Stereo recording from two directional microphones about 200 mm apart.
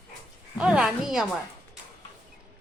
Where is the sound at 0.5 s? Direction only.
5° right (ahead or behind).